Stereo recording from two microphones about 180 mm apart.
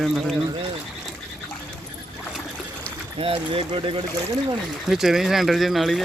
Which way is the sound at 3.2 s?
30° right (ahead or behind).